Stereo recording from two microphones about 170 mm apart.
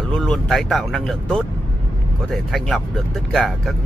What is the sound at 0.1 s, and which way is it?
Speech, 5° left (ahead or behind).